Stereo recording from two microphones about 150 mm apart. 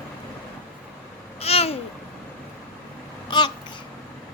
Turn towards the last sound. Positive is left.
turn(degrees=30)  # may be behind; listen again after turning